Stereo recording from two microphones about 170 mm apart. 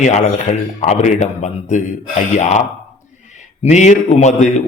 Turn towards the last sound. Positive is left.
turn(degrees=45)  # may be behind; listen again after turning